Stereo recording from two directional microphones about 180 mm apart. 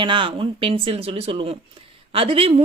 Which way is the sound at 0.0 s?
30° right (ahead or behind).